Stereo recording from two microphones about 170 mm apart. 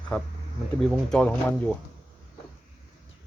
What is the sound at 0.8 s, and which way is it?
Speech, 5° left (ahead or behind).